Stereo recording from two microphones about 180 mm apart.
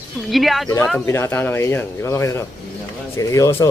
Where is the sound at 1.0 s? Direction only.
15° left (ahead or behind).